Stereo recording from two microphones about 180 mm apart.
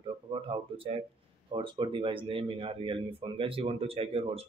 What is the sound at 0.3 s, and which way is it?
Speech, 30° right (ahead or behind).